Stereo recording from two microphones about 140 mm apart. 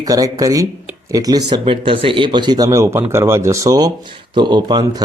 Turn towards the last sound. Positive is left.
turn(degrees=-30)  # may be behind; listen again after turning